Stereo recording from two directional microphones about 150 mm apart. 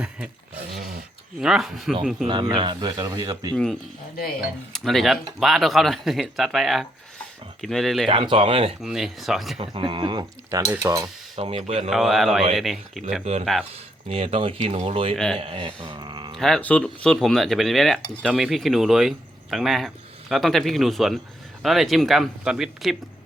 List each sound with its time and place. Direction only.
0.8 s speech: 75° right (ahead or behind)
1.4 s speech: centre (ahead or behind)
2.2 s speech: 30° right (ahead or behind)
3.5 s speech: 5° left (ahead or behind)
8.0 s speech: 35° right (ahead or behind)
8.8 s speech: centre (ahead or behind)
9.6 s speech: 35° right (ahead or behind)
10.7 s speech: 20° right (ahead or behind)
11.3 s speech: 40° right (ahead or behind)
11.9 s speech: centre (ahead or behind)
14.1 s speech: 40° right (ahead or behind)
15.1 s speech: 5° left (ahead or behind)
15.4 s speech: 35° right (ahead or behind)
16.4 s speech: 5° left (ahead or behind)